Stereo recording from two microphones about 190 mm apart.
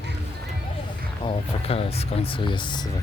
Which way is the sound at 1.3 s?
30° left (ahead or behind).